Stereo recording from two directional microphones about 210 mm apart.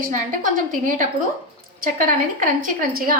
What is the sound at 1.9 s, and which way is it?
A woman's voice, 40° right (ahead or behind).